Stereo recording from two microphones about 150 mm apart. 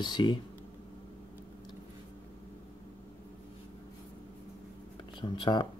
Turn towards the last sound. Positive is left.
turn(degrees=30)  # may be behind; listen again after turning